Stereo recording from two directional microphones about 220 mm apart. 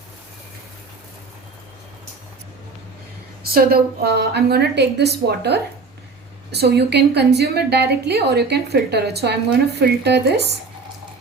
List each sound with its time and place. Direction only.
3.5 s a woman's voice: 45° right (ahead or behind)